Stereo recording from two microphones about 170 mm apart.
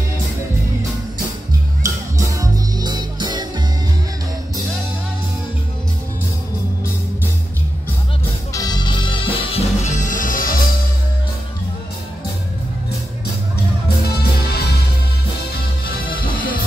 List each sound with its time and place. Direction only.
1.8 s music: 20° right (ahead or behind)
8.5 s music: 25° left (ahead or behind); by 10.5 s 50° left (ahead or behind)
14.0 s music: 65° left (ahead or behind)
16.1 s music: 60° left (ahead or behind)